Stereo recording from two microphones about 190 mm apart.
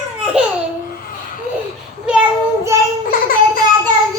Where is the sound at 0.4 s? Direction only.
5° right (ahead or behind).